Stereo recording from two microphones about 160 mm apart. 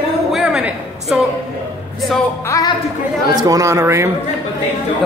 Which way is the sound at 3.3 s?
20° right (ahead or behind).